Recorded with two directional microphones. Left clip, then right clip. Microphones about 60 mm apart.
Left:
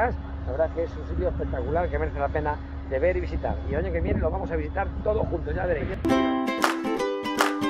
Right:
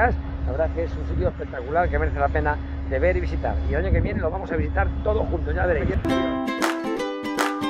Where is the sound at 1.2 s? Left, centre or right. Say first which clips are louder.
Right 1 dB; right.